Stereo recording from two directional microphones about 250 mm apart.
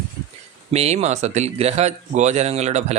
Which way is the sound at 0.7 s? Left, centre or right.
Right.